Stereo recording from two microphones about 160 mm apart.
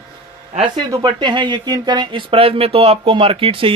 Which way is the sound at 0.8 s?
25° right (ahead or behind).